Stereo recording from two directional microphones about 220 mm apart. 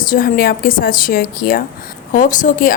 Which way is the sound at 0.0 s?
40° left (ahead or behind).